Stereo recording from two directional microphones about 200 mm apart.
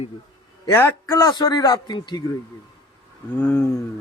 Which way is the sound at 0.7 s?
15° left (ahead or behind).